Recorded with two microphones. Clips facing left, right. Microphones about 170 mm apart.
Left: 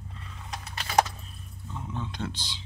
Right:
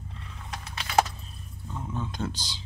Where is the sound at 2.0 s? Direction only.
45° right (ahead or behind).